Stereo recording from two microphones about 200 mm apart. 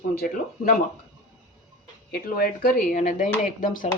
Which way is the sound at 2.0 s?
50° left (ahead or behind).